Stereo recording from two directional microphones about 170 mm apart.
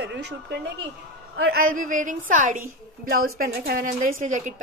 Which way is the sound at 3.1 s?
60° right (ahead or behind).